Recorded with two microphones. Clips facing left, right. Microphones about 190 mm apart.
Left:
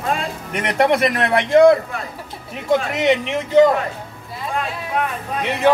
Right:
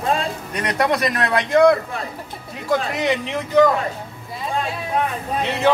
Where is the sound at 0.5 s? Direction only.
25° left (ahead or behind).